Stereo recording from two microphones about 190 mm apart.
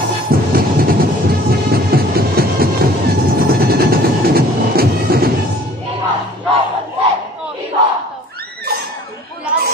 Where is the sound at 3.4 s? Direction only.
55° right (ahead or behind).